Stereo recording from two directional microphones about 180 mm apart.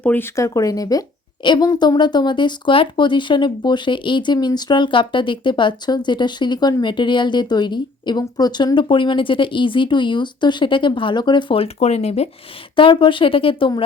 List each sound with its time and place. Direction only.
0.0 s speech: 10° left (ahead or behind); by 13.8 s 30° left (ahead or behind)